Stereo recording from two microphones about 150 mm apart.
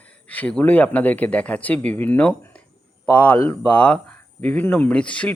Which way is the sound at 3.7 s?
10° left (ahead or behind).